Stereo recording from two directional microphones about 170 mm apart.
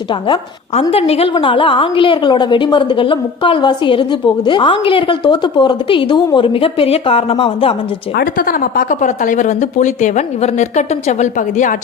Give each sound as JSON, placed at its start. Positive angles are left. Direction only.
{"t": 0.1, "sound": "a woman's voice", "side_deg": 30}
{"t": 8.1, "sound": "a woman's voice", "side_deg": 55}